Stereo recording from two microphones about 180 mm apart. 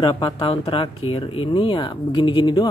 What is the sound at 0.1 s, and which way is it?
Speech, 25° left (ahead or behind).